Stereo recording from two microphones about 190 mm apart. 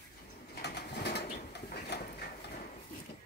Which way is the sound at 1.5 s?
55° left (ahead or behind).